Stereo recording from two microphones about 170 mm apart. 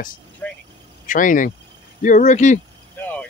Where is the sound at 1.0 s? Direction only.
50° left (ahead or behind).